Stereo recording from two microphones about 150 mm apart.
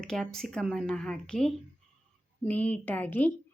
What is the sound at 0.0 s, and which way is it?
A woman's voice, 5° left (ahead or behind).